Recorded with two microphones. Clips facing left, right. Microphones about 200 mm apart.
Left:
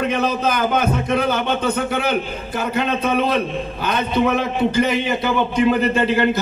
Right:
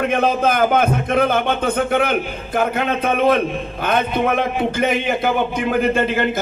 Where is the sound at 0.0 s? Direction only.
50° right (ahead or behind).